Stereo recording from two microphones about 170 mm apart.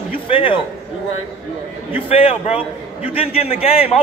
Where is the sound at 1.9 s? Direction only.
35° left (ahead or behind).